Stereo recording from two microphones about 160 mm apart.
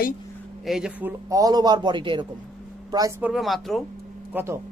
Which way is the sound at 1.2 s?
20° right (ahead or behind).